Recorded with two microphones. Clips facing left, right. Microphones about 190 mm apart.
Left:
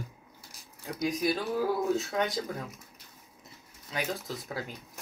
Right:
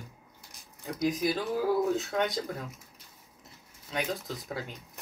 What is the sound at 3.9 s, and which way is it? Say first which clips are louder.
Speech: right 1 dB; centre (ahead or behind).